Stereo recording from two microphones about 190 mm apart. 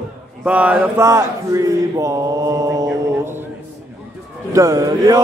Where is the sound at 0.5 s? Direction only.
5° right (ahead or behind).